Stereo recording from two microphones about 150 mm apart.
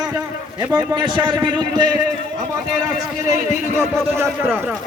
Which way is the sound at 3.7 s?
15° right (ahead or behind).